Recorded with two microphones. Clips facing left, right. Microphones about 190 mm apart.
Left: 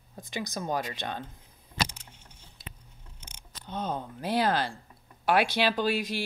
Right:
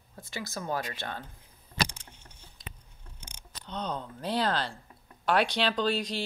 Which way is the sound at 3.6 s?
5° left (ahead or behind).